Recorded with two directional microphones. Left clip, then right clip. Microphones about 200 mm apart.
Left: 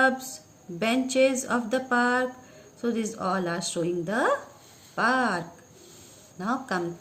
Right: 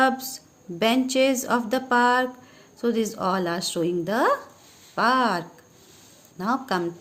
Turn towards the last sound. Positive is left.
turn(degrees=-45)  # may be behind; listen again after turning